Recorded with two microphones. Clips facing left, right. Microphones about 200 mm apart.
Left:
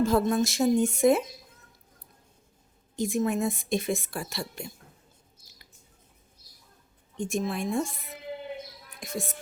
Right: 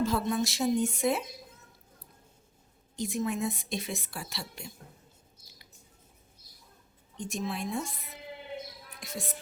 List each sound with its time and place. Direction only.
0.0 s a woman's voice: 50° left (ahead or behind)
2.9 s a woman's voice: 50° left (ahead or behind)
7.2 s a woman's voice: 50° left (ahead or behind)
9.0 s music: 50° left (ahead or behind)